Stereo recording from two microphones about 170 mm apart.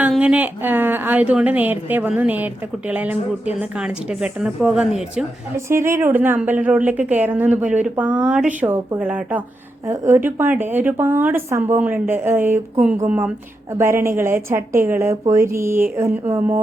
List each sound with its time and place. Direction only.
0.0 s a woman's voice: 10° right (ahead or behind)
5.5 s a woman's voice: 15° right (ahead or behind)